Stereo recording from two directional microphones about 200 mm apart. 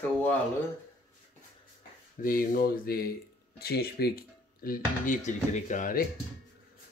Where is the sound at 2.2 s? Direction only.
45° left (ahead or behind).